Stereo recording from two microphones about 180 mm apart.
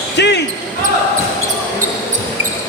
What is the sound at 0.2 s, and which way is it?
Speech, 70° left (ahead or behind).